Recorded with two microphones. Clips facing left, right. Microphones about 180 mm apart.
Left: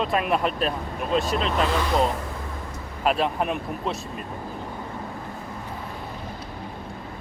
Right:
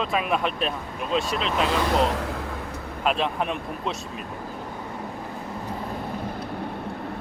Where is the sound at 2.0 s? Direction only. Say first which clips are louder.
Right 1 dB; 75° right (ahead or behind).